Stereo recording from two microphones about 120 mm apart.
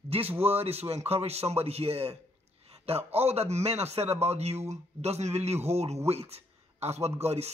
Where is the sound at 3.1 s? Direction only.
60° right (ahead or behind).